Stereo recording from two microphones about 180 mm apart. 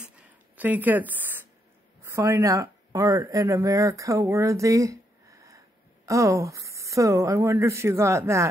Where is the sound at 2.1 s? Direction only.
15° right (ahead or behind).